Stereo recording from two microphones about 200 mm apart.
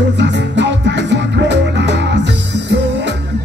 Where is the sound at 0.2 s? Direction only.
60° right (ahead or behind).